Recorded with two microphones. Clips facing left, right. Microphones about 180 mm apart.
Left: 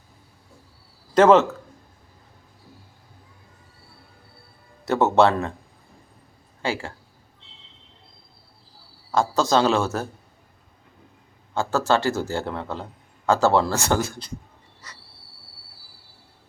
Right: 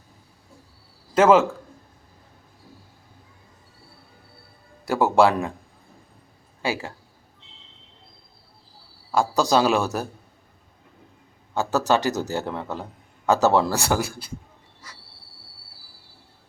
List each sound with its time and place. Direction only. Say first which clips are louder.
1.1 s speech: left 1 dB; 5° right (ahead or behind)
5.1 s a man's voice: right 1 dB; 10° right (ahead or behind)
6.6 s speech: even; 15° right (ahead or behind)
9.1 s a man's voice: even; 15° right (ahead or behind)
11.5 s a man's voice: even; 15° right (ahead or behind)